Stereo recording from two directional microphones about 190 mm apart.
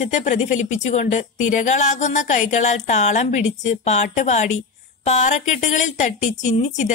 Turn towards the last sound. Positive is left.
turn(degrees=40)  # may be behind; listen again after turning